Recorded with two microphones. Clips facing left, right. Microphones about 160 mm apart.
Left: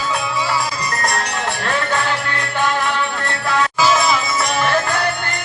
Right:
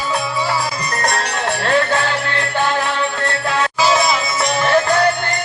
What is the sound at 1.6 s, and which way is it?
Music, 35° right (ahead or behind).